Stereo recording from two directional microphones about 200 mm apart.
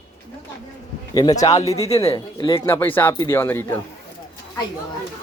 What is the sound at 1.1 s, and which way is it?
Speech, 20° left (ahead or behind).